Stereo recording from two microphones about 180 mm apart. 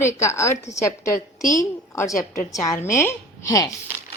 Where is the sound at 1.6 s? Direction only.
15° left (ahead or behind).